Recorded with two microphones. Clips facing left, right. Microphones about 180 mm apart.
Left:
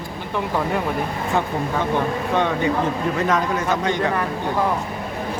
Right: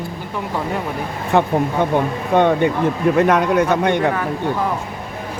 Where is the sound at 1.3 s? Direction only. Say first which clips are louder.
Right 7 dB; 65° right (ahead or behind).